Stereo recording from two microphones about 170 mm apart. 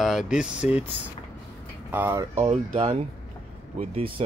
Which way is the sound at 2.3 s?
40° right (ahead or behind).